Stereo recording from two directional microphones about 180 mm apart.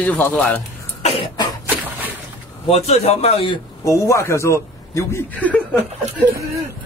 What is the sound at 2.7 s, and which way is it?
Speech, 35° left (ahead or behind).